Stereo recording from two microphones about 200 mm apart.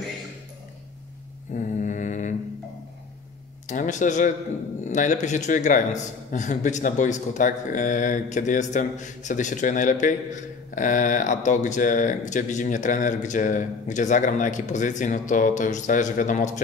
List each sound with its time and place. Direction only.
1.5 s mantra: 40° left (ahead or behind)
3.6 s speech: 40° left (ahead or behind)